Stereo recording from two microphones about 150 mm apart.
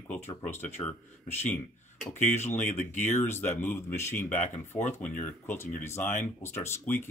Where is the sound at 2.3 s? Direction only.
15° left (ahead or behind).